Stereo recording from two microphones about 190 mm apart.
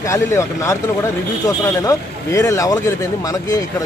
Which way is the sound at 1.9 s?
15° left (ahead or behind).